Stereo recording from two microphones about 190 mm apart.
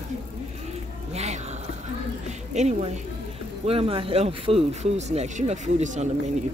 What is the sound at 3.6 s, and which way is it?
Speech, 30° right (ahead or behind).